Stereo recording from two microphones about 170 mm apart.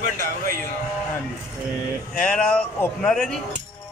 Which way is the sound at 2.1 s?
5° left (ahead or behind).